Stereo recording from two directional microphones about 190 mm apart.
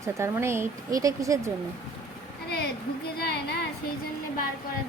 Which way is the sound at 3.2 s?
60° left (ahead or behind).